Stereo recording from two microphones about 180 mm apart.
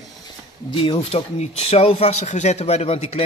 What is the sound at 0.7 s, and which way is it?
Speech, 30° left (ahead or behind).